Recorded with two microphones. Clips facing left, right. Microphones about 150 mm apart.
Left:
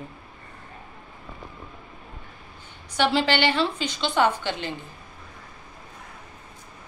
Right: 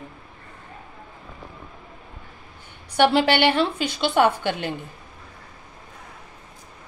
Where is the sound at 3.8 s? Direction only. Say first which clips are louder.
Right 4 dB; 5° right (ahead or behind).